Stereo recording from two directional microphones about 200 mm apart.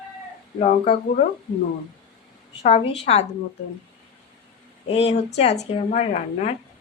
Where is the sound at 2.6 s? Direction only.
30° left (ahead or behind).